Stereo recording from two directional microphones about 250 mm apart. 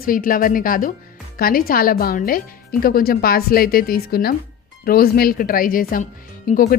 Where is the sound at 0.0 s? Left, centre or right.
Left.